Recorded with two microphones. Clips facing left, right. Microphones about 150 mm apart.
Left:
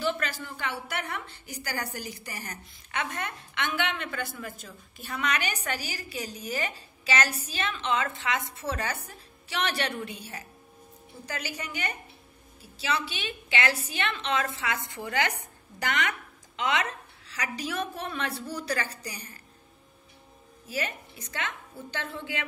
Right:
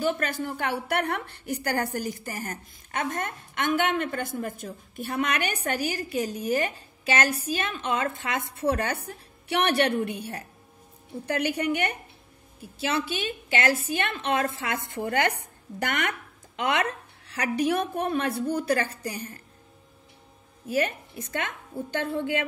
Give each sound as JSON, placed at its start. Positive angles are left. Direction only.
{"t": 0.0, "sound": "a woman's voice", "side_deg": -50}
{"t": 20.6, "sound": "a woman's voice", "side_deg": -55}